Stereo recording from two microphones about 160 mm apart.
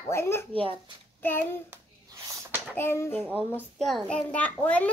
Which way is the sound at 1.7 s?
15° right (ahead or behind).